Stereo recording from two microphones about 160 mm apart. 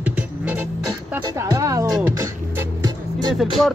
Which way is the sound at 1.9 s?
5° right (ahead or behind).